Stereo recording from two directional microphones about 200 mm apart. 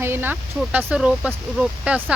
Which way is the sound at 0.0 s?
10° right (ahead or behind).